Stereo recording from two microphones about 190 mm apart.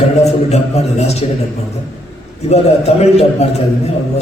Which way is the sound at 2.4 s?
35° left (ahead or behind).